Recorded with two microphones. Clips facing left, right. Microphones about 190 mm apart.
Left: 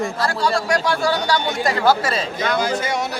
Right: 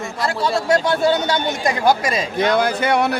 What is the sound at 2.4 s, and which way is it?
Speech, 60° right (ahead or behind).